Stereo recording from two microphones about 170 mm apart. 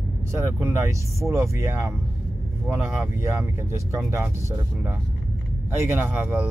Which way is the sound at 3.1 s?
15° right (ahead or behind).